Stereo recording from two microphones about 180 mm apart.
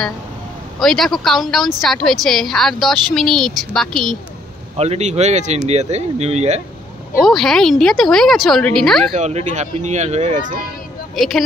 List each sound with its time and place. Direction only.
0.7 s a woman's voice: centre (ahead or behind)
4.7 s speech: 35° right (ahead or behind)
7.2 s a woman's voice: centre (ahead or behind)
9.1 s speech: 40° right (ahead or behind)
11.1 s a woman's voice: centre (ahead or behind)